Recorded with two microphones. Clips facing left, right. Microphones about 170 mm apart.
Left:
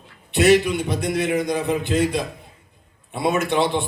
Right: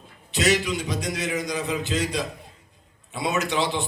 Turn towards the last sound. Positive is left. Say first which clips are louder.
# left 4 dB
turn(degrees=55)  # may be behind; listen again after turning